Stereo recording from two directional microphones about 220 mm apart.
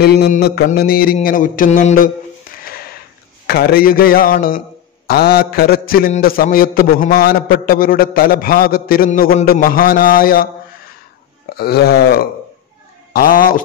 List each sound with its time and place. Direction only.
0.0 s a man's voice: 45° left (ahead or behind)
3.4 s a man's voice: 45° left (ahead or behind)
11.4 s wail: 45° left (ahead or behind)
13.1 s a man's voice: 40° left (ahead or behind)